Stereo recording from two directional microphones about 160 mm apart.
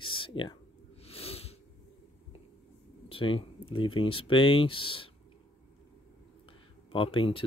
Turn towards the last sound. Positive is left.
turn(degrees=35)  # may be behind; listen again after turning